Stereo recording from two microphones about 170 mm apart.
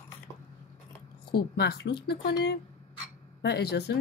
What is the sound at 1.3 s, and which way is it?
A woman's voice, 70° left (ahead or behind).